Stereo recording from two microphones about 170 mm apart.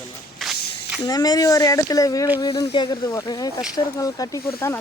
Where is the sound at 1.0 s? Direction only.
20° left (ahead or behind).